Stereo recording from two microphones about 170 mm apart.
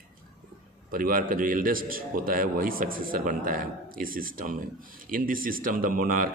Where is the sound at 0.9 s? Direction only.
55° right (ahead or behind).